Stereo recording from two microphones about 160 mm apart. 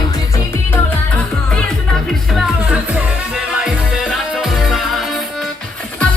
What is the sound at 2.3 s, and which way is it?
Music, centre (ahead or behind).